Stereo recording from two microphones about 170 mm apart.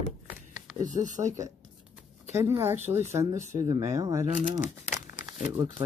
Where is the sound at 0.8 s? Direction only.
45° right (ahead or behind).